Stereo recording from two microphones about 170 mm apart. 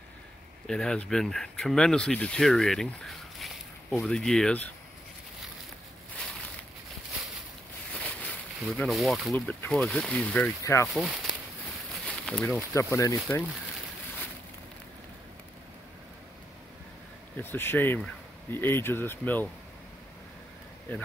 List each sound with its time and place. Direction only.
0.7 s speech: 5° left (ahead or behind)
7.9 s speech: 5° left (ahead or behind)
10.9 s speech: centre (ahead or behind)
11.9 s a sound: 5° left (ahead or behind)
12.7 s speech: 20° left (ahead or behind)
17.4 s speech: 10° left (ahead or behind)
20.9 s speech: 10° left (ahead or behind)